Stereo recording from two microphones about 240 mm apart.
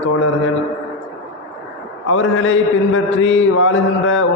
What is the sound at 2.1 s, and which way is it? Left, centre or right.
Mantra, left.